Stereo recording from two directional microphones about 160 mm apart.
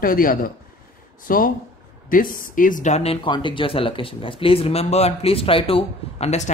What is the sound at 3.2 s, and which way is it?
A woman's voice, 30° left (ahead or behind).